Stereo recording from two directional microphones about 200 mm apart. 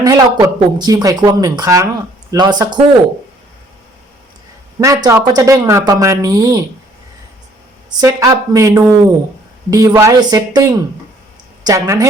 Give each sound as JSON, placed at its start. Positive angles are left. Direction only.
{"t": 0.0, "sound": "speech", "side_deg": -15}
{"t": 4.8, "sound": "speech", "side_deg": -15}
{"t": 7.9, "sound": "a woman's voice", "side_deg": -15}